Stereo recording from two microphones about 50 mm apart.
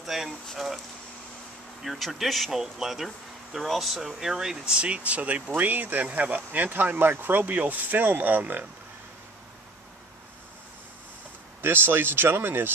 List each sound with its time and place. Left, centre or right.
0.0 s speech: centre
1.8 s speech: centre
4.7 s speech: right
11.6 s speech: right